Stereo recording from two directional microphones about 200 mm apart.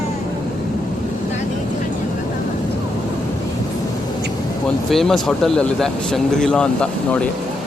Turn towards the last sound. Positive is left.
turn(degrees=5)  # may be behind; listen again after turning